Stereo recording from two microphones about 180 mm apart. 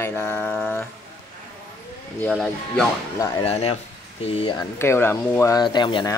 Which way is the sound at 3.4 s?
35° left (ahead or behind).